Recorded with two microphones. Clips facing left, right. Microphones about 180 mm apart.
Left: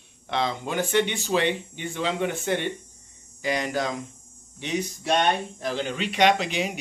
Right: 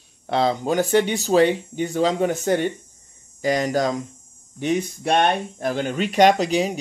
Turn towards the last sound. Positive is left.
turn(degrees=-35)  # may be behind; listen again after turning